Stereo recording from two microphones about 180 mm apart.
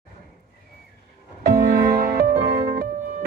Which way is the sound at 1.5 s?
55° right (ahead or behind).